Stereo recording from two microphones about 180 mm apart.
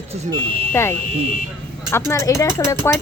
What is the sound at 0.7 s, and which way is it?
Speech, 15° left (ahead or behind).